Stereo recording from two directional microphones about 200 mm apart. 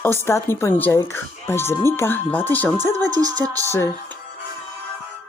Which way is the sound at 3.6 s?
15° left (ahead or behind).